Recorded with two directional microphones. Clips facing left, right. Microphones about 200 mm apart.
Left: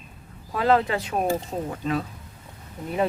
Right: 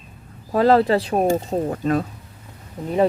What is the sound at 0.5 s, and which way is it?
Speech, 40° right (ahead or behind).